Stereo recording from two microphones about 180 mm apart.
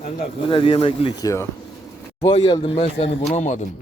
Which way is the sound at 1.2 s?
15° left (ahead or behind).